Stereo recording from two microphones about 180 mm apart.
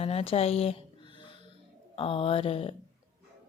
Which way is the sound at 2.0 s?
30° left (ahead or behind).